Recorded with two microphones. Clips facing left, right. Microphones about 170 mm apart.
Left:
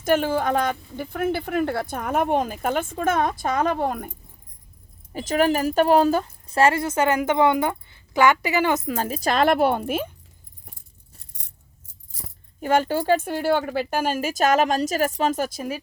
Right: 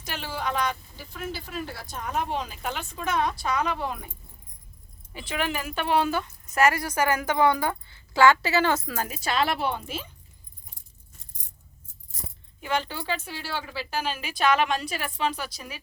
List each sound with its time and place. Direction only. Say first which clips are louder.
0.0 s speech: left 12 dB; 50° left (ahead or behind)
5.1 s speech: left 9 dB; 40° left (ahead or behind)
11.2 s coin: left 1 dB; 70° left (ahead or behind)
12.1 s speech: even; 45° left (ahead or behind)